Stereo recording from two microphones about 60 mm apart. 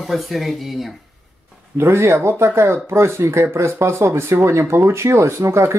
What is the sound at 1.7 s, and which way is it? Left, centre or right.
Speech, right.